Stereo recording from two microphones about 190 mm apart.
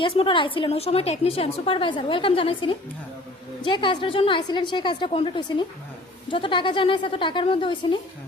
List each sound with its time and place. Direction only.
0.0 s a woman's voice: 25° left (ahead or behind)